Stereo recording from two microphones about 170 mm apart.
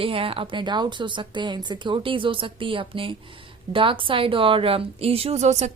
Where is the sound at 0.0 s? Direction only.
30° right (ahead or behind).